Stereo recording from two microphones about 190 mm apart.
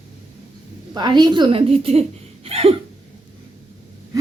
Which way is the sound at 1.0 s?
25° right (ahead or behind).